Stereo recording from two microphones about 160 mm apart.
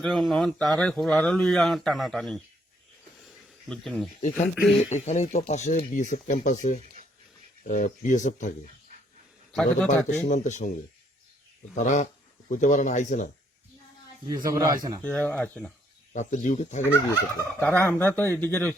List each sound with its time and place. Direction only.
0.0 s speech: centre (ahead or behind)
3.2 s a sound: centre (ahead or behind)
4.4 s speech: centre (ahead or behind)
4.9 s speech: 45° left (ahead or behind)
9.5 s speech: 5° left (ahead or behind)
10.2 s speech: 50° left (ahead or behind)
14.5 s speech: 20° right (ahead or behind)
15.0 s speech: 10° left (ahead or behind)
16.1 s speech: 50° left (ahead or behind)
16.8 s speech: 15° left (ahead or behind)